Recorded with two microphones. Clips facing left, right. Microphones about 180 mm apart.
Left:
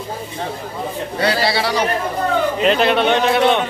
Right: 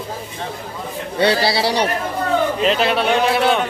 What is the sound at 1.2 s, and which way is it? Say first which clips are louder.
Speech: right 2 dB; 30° right (ahead or behind).